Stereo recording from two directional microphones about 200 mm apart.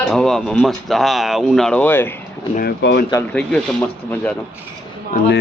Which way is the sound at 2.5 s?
55° left (ahead or behind).